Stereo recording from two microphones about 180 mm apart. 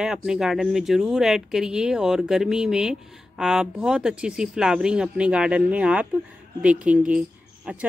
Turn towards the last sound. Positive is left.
turn(degrees=-10)  # may be behind; listen again after turning